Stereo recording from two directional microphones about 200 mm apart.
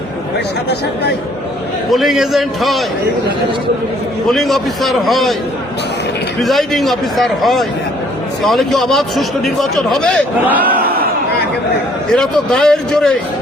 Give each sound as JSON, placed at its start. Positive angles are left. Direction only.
{"t": 1.9, "sound": "a man's voice", "side_deg": 0}
{"t": 4.3, "sound": "a man's voice", "side_deg": 0}
{"t": 6.4, "sound": "a man's voice", "side_deg": 0}
{"t": 10.8, "sound": "chatter", "side_deg": -50}
{"t": 12.1, "sound": "a man's voice", "side_deg": 5}